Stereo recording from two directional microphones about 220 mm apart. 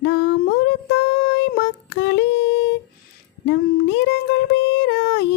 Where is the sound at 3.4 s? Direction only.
50° left (ahead or behind).